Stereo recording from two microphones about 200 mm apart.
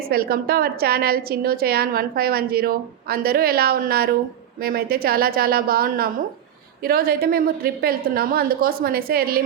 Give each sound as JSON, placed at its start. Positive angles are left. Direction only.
{"t": 0.0, "sound": "a woman's voice", "side_deg": -50}